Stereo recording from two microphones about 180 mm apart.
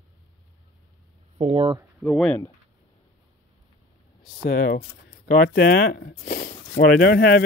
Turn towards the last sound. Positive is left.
turn(degrees=60)  # may be behind; listen again after turning